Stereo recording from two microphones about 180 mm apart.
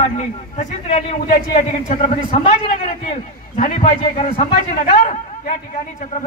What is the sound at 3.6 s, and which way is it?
Speech, 45° left (ahead or behind).